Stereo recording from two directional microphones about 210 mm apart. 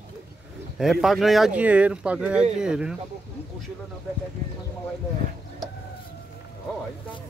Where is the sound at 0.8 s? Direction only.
Centre (ahead or behind).